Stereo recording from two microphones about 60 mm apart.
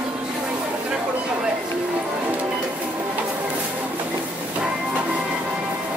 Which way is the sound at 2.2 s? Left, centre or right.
Right.